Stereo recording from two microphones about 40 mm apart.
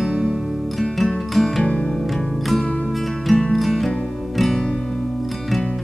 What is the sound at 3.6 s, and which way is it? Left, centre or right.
Music, centre.